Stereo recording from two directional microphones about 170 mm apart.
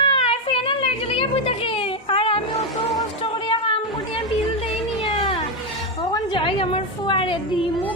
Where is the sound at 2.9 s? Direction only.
30° left (ahead or behind).